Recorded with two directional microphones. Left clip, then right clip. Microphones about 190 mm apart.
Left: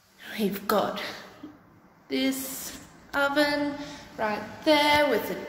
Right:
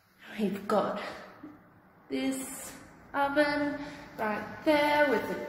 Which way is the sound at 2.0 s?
20° left (ahead or behind).